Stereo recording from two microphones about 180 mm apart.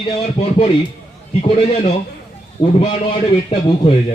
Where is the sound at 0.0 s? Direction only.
30° left (ahead or behind).